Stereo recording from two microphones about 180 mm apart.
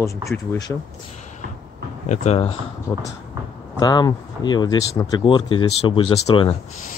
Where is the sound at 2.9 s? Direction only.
20° left (ahead or behind).